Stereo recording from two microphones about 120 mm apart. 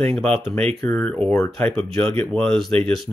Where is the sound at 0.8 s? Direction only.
5° left (ahead or behind).